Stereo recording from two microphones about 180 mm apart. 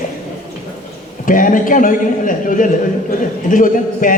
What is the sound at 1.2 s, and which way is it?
A woman's voice, 50° left (ahead or behind).